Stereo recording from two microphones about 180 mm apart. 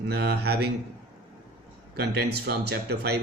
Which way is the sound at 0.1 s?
65° right (ahead or behind).